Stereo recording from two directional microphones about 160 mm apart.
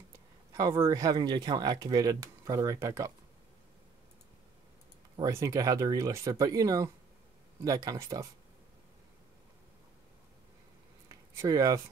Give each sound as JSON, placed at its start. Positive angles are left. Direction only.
{"t": 0.5, "sound": "speech", "side_deg": -20}
{"t": 5.1, "sound": "speech", "side_deg": -20}
{"t": 11.3, "sound": "speech", "side_deg": -25}